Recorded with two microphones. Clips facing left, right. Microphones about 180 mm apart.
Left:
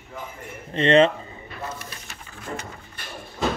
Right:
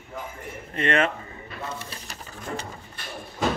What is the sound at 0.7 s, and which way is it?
Speech, 25° left (ahead or behind).